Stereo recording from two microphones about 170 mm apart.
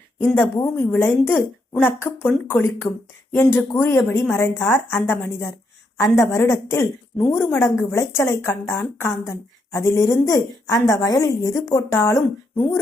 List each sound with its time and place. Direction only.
0.3 s a woman's voice: 15° left (ahead or behind)